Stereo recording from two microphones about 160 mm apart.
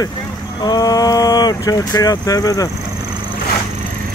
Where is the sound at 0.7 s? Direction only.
25° left (ahead or behind).